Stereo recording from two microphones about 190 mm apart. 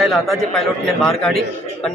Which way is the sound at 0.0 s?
Centre (ahead or behind).